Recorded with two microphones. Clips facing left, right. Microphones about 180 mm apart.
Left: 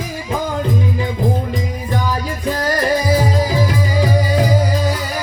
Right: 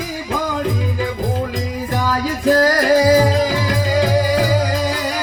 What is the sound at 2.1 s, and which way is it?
Music, 90° right.